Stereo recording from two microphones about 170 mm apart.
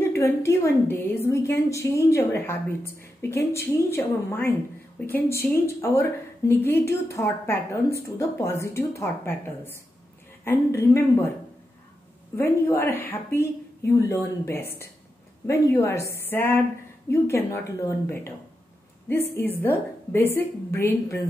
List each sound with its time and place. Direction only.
0.0 s a woman's voice: 15° left (ahead or behind)
12.4 s a woman's voice: 15° left (ahead or behind)